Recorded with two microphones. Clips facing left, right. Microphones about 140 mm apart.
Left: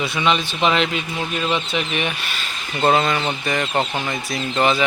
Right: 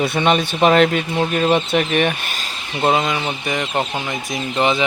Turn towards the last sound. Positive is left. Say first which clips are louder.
# right 1 dB
turn(degrees=-15)  # may be behind; listen again after turning